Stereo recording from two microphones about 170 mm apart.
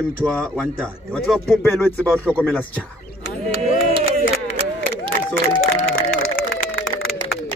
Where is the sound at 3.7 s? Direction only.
35° right (ahead or behind).